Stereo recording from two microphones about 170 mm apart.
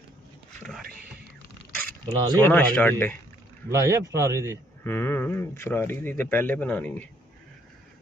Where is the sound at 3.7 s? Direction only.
20° right (ahead or behind).